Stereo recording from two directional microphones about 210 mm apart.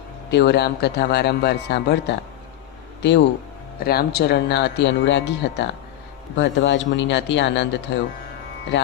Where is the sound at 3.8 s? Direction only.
50° left (ahead or behind).